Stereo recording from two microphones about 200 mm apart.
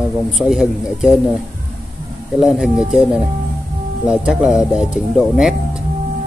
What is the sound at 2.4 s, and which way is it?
Speech, centre (ahead or behind).